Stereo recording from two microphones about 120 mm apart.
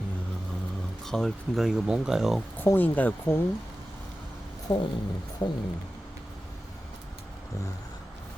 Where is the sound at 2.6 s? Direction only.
15° left (ahead or behind).